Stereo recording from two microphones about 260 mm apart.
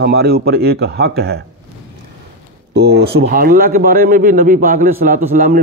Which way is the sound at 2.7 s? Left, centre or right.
Right.